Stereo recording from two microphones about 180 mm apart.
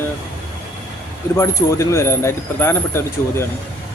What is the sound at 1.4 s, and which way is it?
Speech, 15° left (ahead or behind).